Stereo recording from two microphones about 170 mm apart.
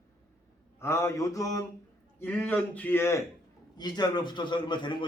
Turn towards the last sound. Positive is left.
turn(degrees=25)  # may be behind; listen again after turning